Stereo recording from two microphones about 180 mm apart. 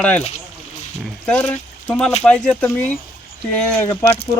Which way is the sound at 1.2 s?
10° left (ahead or behind).